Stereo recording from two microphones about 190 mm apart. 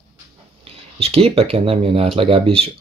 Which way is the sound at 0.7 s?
30° right (ahead or behind).